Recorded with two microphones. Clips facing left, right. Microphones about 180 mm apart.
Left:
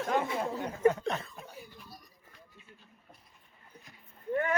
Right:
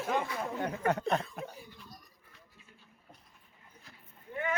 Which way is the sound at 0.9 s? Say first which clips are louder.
Left 3 dB; 70° right (ahead or behind).